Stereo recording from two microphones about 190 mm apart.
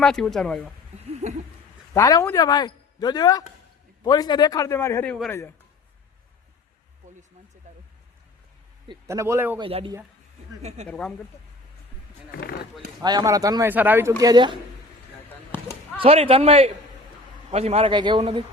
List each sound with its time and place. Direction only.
0.0 s speech: centre (ahead or behind)
1.0 s a sound: 35° right (ahead or behind)
1.9 s speech: 15° left (ahead or behind)
8.9 s a man's voice: 15° right (ahead or behind)
9.6 s a man's voice: 30° right (ahead or behind)
10.8 s speech: 5° left (ahead or behind)
13.0 s speech: 20° right (ahead or behind)
16.0 s a man's voice: 30° right (ahead or behind)